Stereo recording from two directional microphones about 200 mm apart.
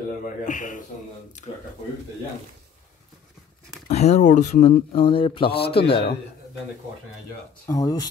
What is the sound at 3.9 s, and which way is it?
Speech, 35° left (ahead or behind).